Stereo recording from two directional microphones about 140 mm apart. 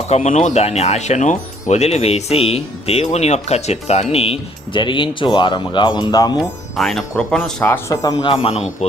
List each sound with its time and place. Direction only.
0.1 s speech: 55° left (ahead or behind); by 6.4 s 30° left (ahead or behind)
6.7 s speech: centre (ahead or behind)
7.6 s speech: 20° left (ahead or behind); by 8.6 s 40° left (ahead or behind)